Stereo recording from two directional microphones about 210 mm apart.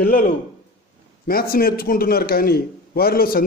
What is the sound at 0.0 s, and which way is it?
Speech, 45° left (ahead or behind).